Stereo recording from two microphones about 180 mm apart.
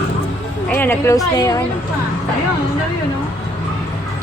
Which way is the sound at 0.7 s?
10° left (ahead or behind).